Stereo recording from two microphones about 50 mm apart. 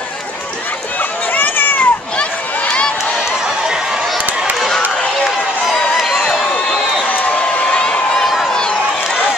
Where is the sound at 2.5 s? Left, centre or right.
Left.